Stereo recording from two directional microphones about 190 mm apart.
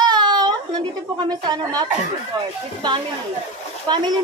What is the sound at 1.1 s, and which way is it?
Speech, 20° right (ahead or behind).